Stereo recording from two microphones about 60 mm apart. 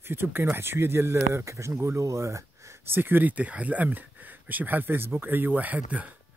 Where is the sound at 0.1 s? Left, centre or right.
Right.